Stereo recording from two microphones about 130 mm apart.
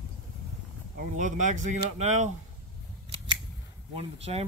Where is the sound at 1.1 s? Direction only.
70° right (ahead or behind).